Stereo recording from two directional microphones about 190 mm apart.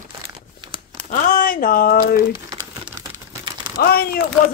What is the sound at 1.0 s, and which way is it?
Speech, 45° left (ahead or behind).